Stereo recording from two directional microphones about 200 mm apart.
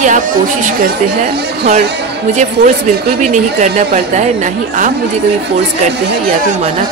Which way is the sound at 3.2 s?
35° right (ahead or behind).